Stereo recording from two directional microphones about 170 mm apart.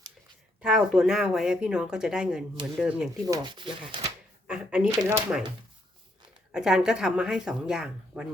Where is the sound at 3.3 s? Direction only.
25° right (ahead or behind).